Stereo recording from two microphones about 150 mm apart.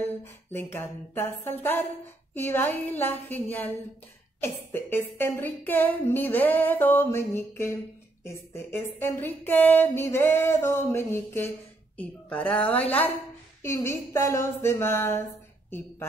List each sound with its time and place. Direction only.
0.0 s music: 15° left (ahead or behind)